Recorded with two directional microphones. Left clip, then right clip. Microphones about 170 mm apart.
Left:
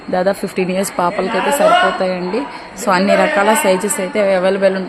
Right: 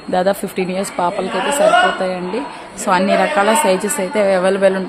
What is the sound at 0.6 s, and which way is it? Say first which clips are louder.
A woman's voice: left 2 dB; 15° left (ahead or behind).